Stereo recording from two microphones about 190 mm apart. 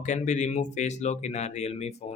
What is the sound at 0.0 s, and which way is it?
Speech, 40° left (ahead or behind).